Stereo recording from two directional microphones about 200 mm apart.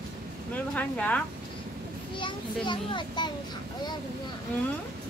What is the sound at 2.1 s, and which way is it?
A child's voice, 25° left (ahead or behind).